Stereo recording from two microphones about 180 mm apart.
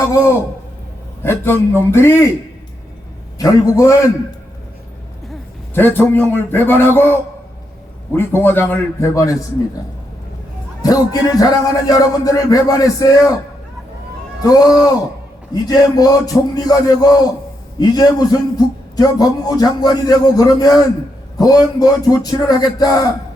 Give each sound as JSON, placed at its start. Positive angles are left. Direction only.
{"t": 1.2, "sound": "a man's voice", "side_deg": 10}
{"t": 3.3, "sound": "a man's voice", "side_deg": 20}
{"t": 5.7, "sound": "a man's voice", "side_deg": 10}
{"t": 10.8, "sound": "a man's voice", "side_deg": 20}
{"t": 14.4, "sound": "a man's voice", "side_deg": 20}